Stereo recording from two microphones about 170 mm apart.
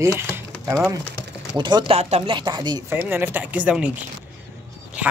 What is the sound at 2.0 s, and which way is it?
Speech, 40° right (ahead or behind).